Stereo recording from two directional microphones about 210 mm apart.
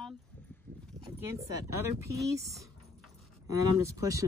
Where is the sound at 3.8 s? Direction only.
15° right (ahead or behind).